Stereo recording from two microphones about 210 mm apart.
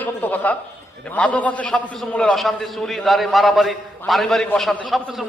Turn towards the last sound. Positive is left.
turn(degrees=0)  # may be behind; listen again after turning